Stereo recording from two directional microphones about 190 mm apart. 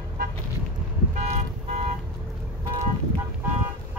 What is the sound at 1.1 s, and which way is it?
Vehicle, 35° right (ahead or behind).